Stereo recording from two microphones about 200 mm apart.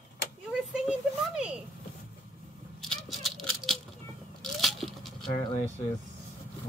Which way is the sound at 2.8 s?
Centre (ahead or behind).